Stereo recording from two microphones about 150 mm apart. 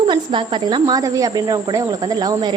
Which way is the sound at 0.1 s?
35° right (ahead or behind).